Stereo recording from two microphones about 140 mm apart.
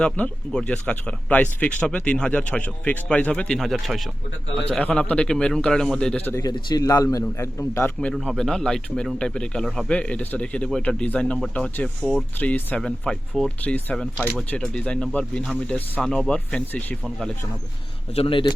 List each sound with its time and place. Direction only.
0.0 s a man's voice: 5° left (ahead or behind)
4.7 s a man's voice: 10° left (ahead or behind)
6.4 s a man's voice: 30° left (ahead or behind)
8.1 s a man's voice: centre (ahead or behind)
18.1 s speech: 40° left (ahead or behind)